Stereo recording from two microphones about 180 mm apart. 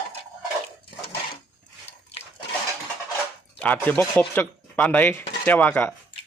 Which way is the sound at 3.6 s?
10° left (ahead or behind).